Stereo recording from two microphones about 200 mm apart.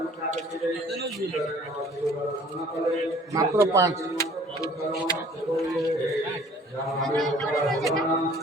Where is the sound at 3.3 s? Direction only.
15° right (ahead or behind).